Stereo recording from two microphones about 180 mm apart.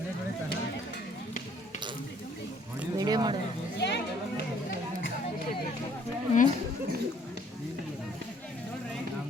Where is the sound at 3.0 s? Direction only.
20° right (ahead or behind).